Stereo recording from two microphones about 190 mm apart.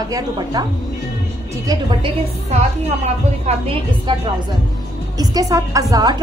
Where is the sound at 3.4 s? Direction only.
30° right (ahead or behind).